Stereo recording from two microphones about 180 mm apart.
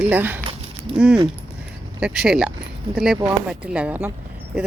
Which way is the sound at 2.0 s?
5° right (ahead or behind).